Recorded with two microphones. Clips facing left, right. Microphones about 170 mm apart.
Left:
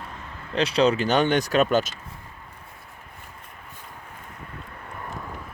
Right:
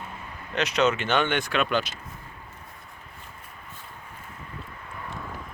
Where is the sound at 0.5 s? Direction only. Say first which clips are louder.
Left 3 dB; 30° left (ahead or behind).